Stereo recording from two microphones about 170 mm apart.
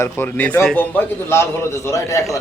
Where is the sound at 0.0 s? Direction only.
10° left (ahead or behind).